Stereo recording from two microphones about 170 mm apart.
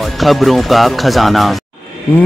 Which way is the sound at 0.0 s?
Centre (ahead or behind).